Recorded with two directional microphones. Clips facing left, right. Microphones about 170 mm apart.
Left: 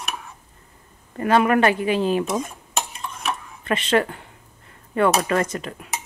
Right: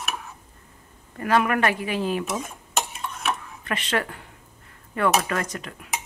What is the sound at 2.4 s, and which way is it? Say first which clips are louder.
Dishes: left 1 dB; centre (ahead or behind).